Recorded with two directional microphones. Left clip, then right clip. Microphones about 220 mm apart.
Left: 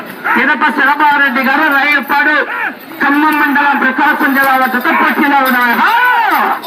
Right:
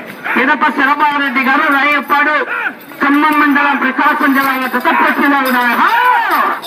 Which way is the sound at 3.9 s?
40° left (ahead or behind).